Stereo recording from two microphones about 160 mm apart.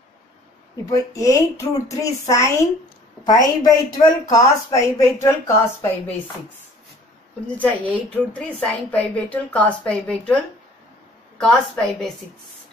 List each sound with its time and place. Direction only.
0.8 s speech: 20° left (ahead or behind)
7.5 s a woman's voice: 10° left (ahead or behind)